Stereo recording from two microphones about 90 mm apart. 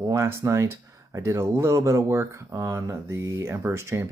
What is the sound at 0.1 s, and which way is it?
Speech, 30° right (ahead or behind).